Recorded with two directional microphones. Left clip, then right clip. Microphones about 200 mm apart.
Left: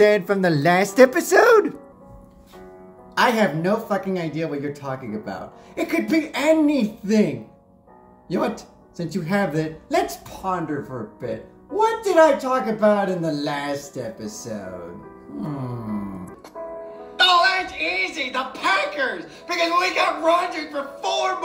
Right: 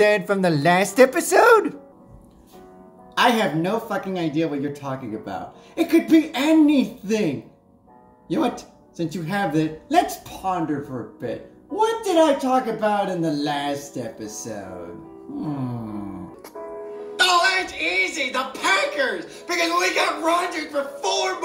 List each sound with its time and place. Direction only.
0.0 s speech: centre (ahead or behind)
3.2 s speech: 15° left (ahead or behind)
8.3 s speech: 15° left (ahead or behind)
16.8 s a woman's voice: 20° right (ahead or behind)